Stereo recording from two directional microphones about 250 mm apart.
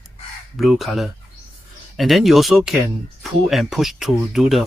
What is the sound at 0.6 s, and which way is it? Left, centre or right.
Speech, centre.